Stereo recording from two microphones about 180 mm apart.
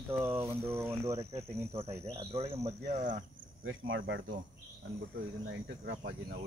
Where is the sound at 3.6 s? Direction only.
90° right.